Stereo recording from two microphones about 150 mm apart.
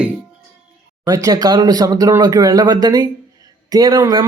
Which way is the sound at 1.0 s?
25° right (ahead or behind).